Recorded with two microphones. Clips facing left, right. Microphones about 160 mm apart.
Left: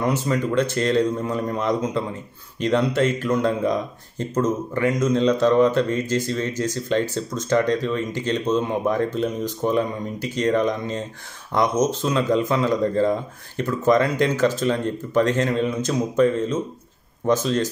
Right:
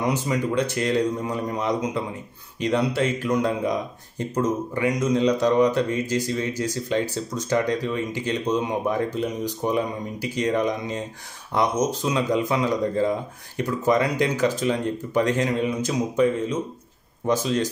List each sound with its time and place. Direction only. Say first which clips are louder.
0.0 s speech: left 2 dB; 15° right (ahead or behind)